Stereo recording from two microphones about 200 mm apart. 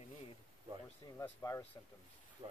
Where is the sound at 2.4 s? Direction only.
25° right (ahead or behind).